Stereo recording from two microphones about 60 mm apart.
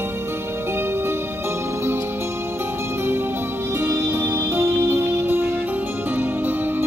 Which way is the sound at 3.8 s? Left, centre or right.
Right.